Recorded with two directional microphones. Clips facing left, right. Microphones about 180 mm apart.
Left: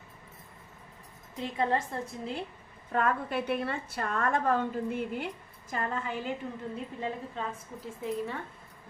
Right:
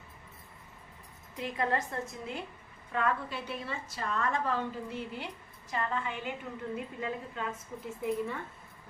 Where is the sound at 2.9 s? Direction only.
50° left (ahead or behind).